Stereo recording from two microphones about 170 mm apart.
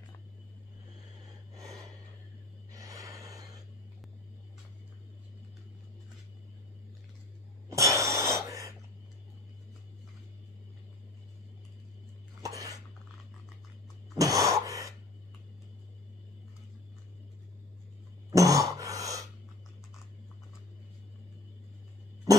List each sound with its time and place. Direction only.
2.7 s a sound: 20° right (ahead or behind)
7.7 s cough: 20° right (ahead or behind)
12.4 s cough: 20° right (ahead or behind)
14.1 s gasp: 20° right (ahead or behind)
18.3 s throat clearing: 20° right (ahead or behind)